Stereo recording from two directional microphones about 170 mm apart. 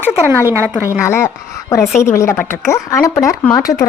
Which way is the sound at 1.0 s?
15° left (ahead or behind).